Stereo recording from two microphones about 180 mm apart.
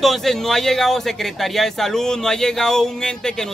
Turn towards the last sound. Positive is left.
turn(degrees=5)  # may be behind; listen again after turning